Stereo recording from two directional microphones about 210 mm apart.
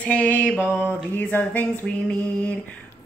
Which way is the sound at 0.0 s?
5° left (ahead or behind).